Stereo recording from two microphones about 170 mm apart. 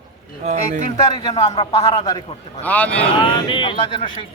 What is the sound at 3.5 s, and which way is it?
Speech, 30° left (ahead or behind).